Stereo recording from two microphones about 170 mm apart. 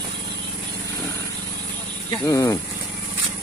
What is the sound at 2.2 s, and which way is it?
Speech, 20° left (ahead or behind).